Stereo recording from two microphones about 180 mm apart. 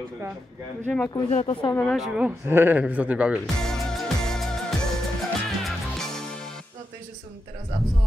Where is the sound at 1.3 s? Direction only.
35° left (ahead or behind).